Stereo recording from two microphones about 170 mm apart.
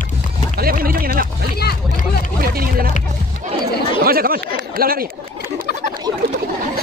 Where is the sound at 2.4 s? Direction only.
60° right (ahead or behind).